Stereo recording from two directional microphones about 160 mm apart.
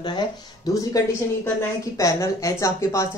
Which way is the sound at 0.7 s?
20° left (ahead or behind).